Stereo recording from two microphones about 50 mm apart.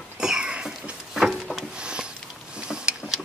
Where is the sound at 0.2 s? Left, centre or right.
Centre.